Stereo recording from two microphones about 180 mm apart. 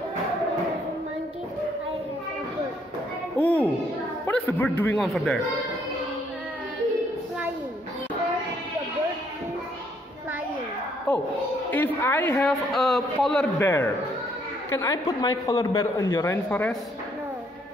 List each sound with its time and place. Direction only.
3.3 s a child's voice: 10° left (ahead or behind)
4.9 s a man's voice: centre (ahead or behind)
11.7 s a man's voice: 10° left (ahead or behind)
13.6 s a man's voice: 15° left (ahead or behind)